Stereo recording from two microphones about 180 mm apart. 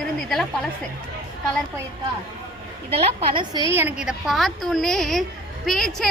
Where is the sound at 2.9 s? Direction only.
35° right (ahead or behind).